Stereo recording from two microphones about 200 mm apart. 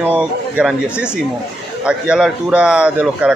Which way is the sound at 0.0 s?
5° right (ahead or behind).